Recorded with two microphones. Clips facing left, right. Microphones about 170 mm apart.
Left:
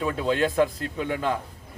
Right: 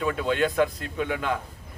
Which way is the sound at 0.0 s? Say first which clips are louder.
Even; 35° left (ahead or behind).